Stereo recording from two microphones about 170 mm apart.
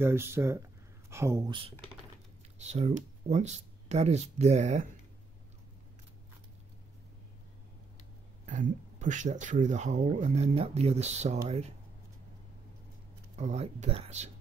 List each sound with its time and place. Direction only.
0.0 s speech: 15° right (ahead or behind)
2.6 s speech: 40° right (ahead or behind)
8.5 s speech: 45° right (ahead or behind)
13.4 s speech: 40° right (ahead or behind)